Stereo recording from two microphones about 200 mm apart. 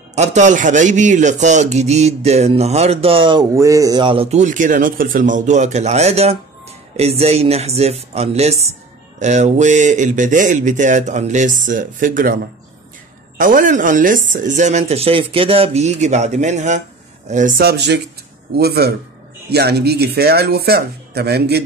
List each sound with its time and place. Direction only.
0.1 s a man's voice: 35° right (ahead or behind)
13.4 s a man's voice: 40° right (ahead or behind)